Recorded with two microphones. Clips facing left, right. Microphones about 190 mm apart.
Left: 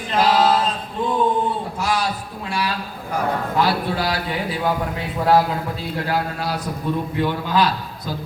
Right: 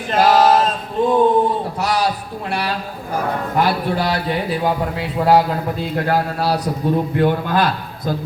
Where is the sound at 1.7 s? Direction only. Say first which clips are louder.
Right 3 dB; 65° right (ahead or behind).